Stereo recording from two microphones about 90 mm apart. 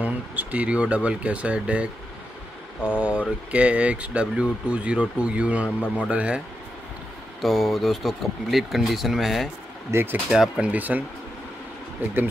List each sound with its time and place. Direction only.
0.0 s speech: 15° right (ahead or behind)
7.4 s speech: centre (ahead or behind); by 11.1 s 20° right (ahead or behind)